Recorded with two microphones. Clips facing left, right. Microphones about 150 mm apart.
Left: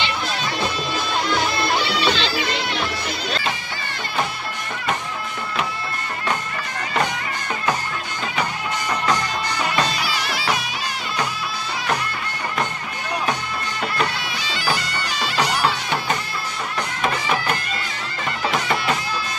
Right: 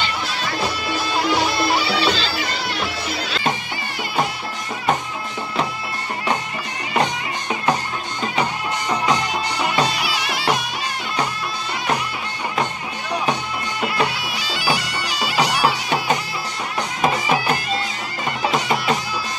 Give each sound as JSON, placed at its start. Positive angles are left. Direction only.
{"t": 1.1, "sound": "music", "side_deg": -5}
{"t": 2.0, "sound": "bagpipes", "side_deg": -40}
{"t": 9.0, "sound": "music", "side_deg": -10}
{"t": 13.3, "sound": "bagpipes", "side_deg": -10}